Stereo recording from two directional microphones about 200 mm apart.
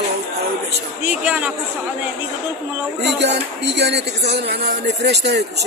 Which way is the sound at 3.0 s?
60° right (ahead or behind).